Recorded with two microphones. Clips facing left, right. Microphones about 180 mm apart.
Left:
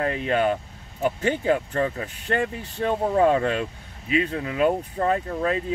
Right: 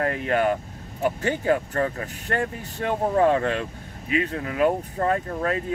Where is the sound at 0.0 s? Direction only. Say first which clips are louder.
Even; 20° left (ahead or behind).